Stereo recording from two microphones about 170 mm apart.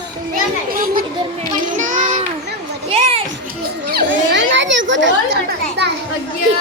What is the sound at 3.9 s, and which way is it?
Children playing, 80° right.